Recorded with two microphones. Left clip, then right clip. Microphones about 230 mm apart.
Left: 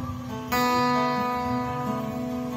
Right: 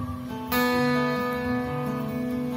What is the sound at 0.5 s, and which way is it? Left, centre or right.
Music, right.